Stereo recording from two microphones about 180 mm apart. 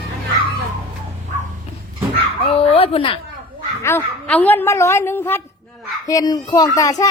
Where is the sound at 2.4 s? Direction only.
30° left (ahead or behind).